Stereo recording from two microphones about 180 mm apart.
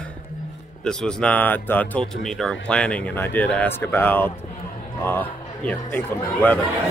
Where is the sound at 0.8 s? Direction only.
5° left (ahead or behind).